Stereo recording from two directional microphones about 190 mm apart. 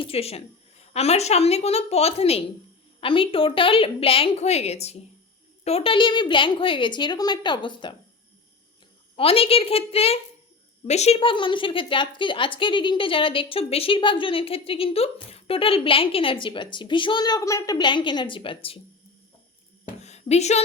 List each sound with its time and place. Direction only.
0.0 s a woman's voice: 30° left (ahead or behind)
9.1 s a woman's voice: 30° left (ahead or behind)
20.0 s a sound: 35° left (ahead or behind)